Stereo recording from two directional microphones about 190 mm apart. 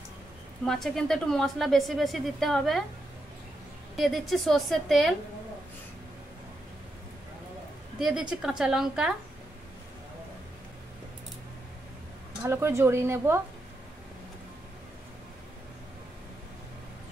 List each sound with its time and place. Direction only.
0.7 s a woman's voice: centre (ahead or behind)
3.9 s a woman's voice: centre (ahead or behind)
8.0 s a woman's voice: 5° right (ahead or behind)
12.4 s speech: 15° right (ahead or behind)